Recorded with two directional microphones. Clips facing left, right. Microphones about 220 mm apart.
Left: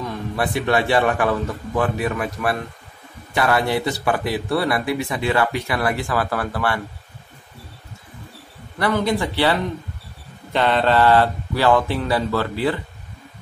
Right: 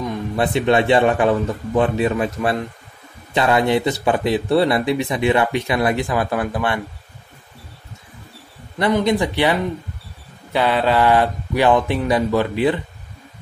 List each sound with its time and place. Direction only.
0.0 s speech: 20° right (ahead or behind)
8.7 s speech: 20° right (ahead or behind)